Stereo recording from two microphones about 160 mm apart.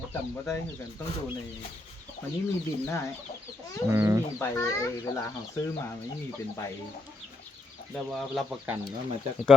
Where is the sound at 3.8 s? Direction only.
15° right (ahead or behind).